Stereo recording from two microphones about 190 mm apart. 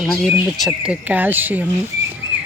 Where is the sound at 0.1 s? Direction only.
Centre (ahead or behind).